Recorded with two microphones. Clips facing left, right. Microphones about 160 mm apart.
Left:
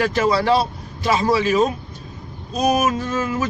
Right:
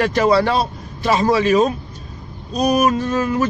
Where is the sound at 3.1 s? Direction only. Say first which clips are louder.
Right 4 dB; 40° right (ahead or behind).